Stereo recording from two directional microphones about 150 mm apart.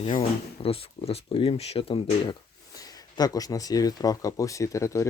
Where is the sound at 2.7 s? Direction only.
25° left (ahead or behind).